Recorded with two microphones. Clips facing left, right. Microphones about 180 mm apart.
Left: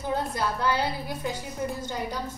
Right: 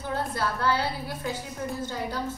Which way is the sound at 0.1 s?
15° left (ahead or behind).